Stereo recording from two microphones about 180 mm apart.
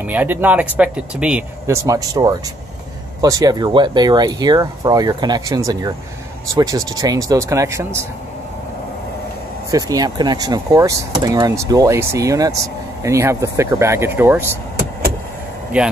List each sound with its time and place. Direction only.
0.0 s speech: 10° right (ahead or behind)
9.7 s speech: 20° right (ahead or behind)
15.7 s speech: 5° right (ahead or behind)